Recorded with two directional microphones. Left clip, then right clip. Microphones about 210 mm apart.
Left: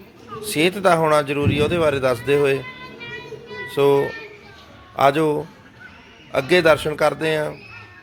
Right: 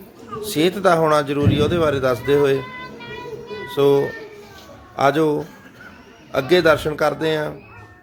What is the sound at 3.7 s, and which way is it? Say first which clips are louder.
Speech: right 1 dB; 5° right (ahead or behind).